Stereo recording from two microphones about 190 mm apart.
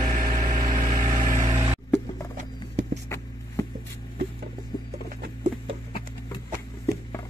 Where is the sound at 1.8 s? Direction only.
10° left (ahead or behind).